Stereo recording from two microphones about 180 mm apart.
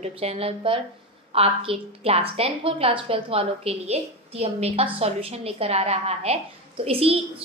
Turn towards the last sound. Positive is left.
turn(degrees=-30)  # may be behind; listen again after turning